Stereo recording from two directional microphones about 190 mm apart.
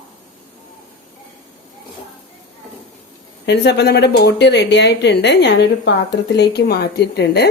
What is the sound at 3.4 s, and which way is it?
A woman's voice, 65° left (ahead or behind).